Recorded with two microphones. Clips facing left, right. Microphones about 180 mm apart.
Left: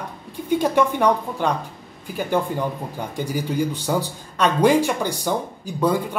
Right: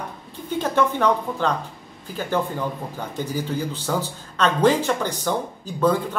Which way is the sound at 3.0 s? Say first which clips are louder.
Left 1 dB; 10° left (ahead or behind).